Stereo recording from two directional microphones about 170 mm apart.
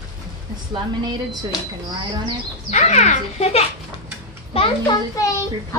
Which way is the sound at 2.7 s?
40° left (ahead or behind).